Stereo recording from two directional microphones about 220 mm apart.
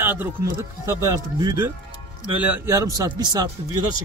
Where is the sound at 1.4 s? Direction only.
15° right (ahead or behind).